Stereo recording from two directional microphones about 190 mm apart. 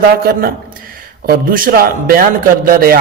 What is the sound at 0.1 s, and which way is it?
A man's voice, 50° right (ahead or behind).